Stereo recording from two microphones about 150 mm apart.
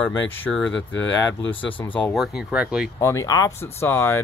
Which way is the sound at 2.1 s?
Centre (ahead or behind).